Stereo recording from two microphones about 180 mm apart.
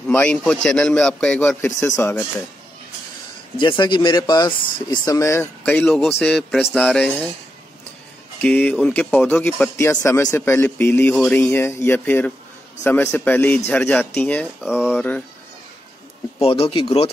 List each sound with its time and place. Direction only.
0.1 s a man's voice: 5° left (ahead or behind)
3.5 s speech: 25° left (ahead or behind)
5.8 s a man's voice: centre (ahead or behind)
8.4 s speech: 10° left (ahead or behind)
16.3 s speech: 35° left (ahead or behind)